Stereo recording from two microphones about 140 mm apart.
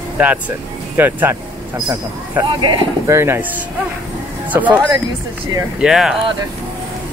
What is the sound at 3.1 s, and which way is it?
Speech, 15° right (ahead or behind).